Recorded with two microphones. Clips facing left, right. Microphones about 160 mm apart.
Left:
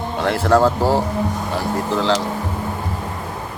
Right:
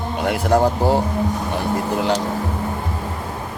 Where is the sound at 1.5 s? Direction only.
15° right (ahead or behind).